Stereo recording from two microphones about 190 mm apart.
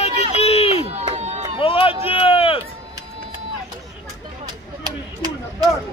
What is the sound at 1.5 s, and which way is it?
Run, 30° left (ahead or behind).